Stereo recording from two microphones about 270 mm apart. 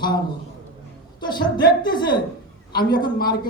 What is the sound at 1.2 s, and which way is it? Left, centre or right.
Speech, centre.